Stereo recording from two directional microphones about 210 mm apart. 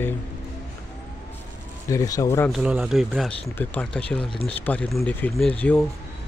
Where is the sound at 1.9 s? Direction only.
15° left (ahead or behind).